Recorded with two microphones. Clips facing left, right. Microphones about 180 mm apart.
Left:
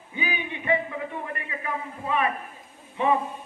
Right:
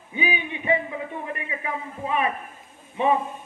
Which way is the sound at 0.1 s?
20° right (ahead or behind).